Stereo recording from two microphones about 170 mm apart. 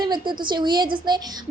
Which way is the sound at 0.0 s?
25° right (ahead or behind).